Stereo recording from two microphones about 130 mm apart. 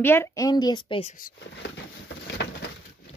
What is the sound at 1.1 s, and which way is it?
Speech, 90° left.